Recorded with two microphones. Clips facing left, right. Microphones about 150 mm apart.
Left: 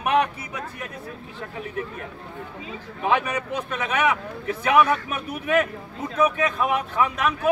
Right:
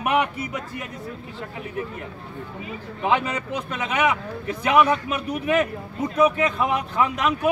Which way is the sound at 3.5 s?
15° right (ahead or behind).